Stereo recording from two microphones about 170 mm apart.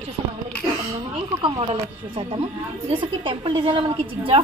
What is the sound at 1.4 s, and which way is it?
A woman's voice, 30° right (ahead or behind).